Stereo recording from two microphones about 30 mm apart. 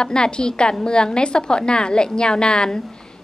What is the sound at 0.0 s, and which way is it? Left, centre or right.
A woman's voice, left.